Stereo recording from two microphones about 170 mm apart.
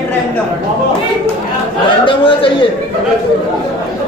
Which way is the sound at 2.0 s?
30° left (ahead or behind).